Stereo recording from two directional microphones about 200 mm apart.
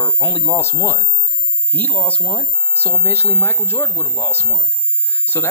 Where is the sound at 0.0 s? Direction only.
10° left (ahead or behind).